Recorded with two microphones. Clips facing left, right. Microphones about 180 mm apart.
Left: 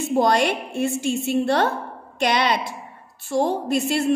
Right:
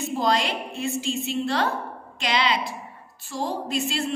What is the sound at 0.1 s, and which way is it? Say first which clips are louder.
A woman's voice: left 6 dB; 60° left (ahead or behind).